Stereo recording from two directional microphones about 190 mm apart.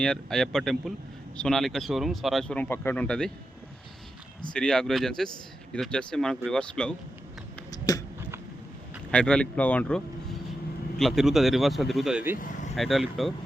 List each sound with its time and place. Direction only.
0.0 s speech: 5° left (ahead or behind)
4.5 s speech: 5° left (ahead or behind)
7.7 s a sound: 20° left (ahead or behind)
9.1 s speech: 5° left (ahead or behind)